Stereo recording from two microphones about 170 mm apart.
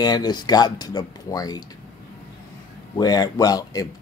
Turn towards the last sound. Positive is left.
turn(degrees=20)  # may be behind; listen again after turning